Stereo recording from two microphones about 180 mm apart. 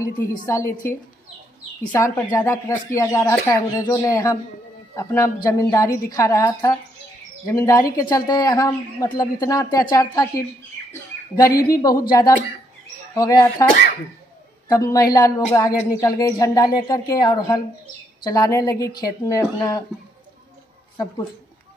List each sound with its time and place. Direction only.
0.5 s speech: 15° left (ahead or behind)
14.7 s speech: 20° left (ahead or behind)